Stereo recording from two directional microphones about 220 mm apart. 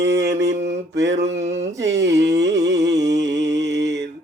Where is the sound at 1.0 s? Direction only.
55° right (ahead or behind).